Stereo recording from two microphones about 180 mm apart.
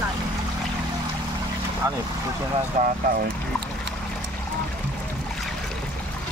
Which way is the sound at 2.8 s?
40° right (ahead or behind).